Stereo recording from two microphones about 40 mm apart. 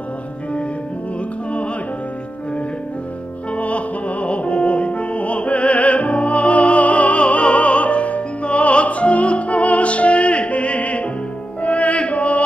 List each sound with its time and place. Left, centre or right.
3.5 s music: left